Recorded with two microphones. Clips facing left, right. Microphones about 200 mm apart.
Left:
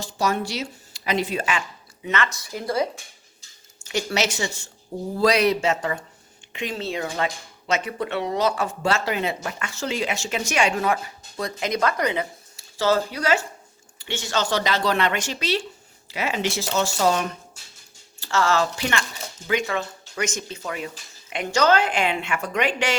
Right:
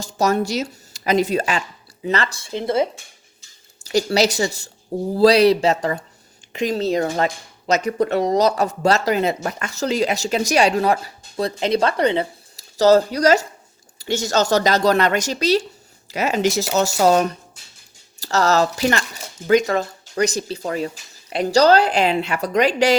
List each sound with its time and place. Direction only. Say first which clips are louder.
0.0 s speech: right 5 dB; 45° right (ahead or behind); by 2.8 s 25° right (ahead or behind)
3.8 s speech: right 7 dB; 35° right (ahead or behind)